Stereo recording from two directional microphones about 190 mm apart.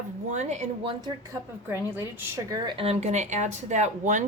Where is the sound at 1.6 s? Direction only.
10° right (ahead or behind).